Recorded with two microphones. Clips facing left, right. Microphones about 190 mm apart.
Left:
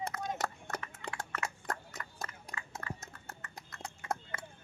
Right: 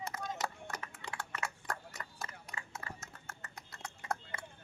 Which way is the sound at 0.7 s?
55° left (ahead or behind).